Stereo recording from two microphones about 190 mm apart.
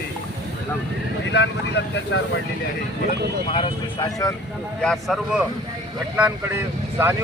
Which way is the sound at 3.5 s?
25° left (ahead or behind).